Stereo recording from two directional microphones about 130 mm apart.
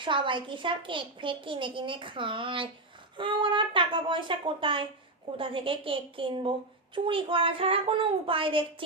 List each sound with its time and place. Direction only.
0.0 s a woman's voice: 40° right (ahead or behind)